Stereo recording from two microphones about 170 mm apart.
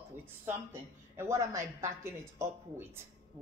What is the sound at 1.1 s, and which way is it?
A woman's voice, 15° right (ahead or behind).